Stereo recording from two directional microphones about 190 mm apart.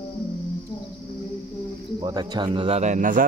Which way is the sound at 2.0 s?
20° right (ahead or behind).